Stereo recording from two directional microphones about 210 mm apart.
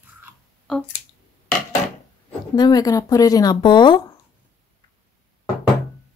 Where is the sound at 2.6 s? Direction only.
20° left (ahead or behind).